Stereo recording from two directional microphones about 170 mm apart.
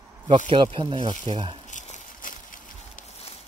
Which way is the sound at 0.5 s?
30° right (ahead or behind).